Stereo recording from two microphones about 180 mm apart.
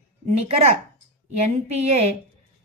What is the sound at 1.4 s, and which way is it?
Speech, 35° right (ahead or behind).